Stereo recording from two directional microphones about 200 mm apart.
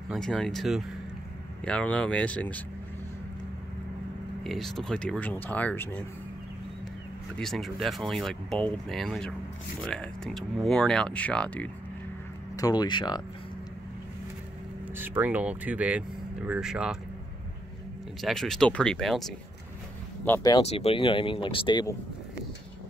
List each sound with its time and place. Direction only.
0.1 s speech: 5° left (ahead or behind)
4.4 s speech: centre (ahead or behind)
7.3 s speech: centre (ahead or behind)
12.5 s speech: 20° left (ahead or behind)
15.0 s speech: 10° right (ahead or behind)
18.2 s speech: centre (ahead or behind)
20.2 s speech: 15° left (ahead or behind)
20.6 s speech: 30° left (ahead or behind)